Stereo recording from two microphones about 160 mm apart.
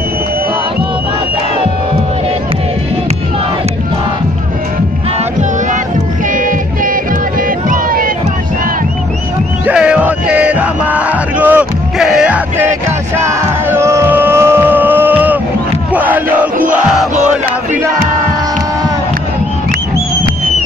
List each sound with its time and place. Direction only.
6.3 s child singing: 55° right (ahead or behind)
7.7 s crowd: 60° right (ahead or behind)
9.7 s music: 5° right (ahead or behind)
13.2 s crowd: 15° right (ahead or behind)
16.7 s a sound: centre (ahead or behind)